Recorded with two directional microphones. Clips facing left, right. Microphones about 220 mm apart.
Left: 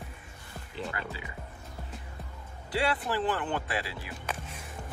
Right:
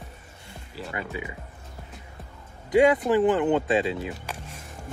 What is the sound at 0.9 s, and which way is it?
Speech, 20° right (ahead or behind).